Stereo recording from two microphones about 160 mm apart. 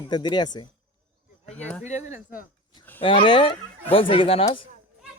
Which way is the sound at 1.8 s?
50° left (ahead or behind).